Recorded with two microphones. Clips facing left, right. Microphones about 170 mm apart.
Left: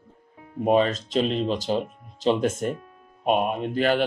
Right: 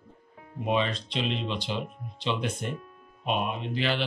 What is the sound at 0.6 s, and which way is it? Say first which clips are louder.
Speech: left 7 dB; 45° left (ahead or behind).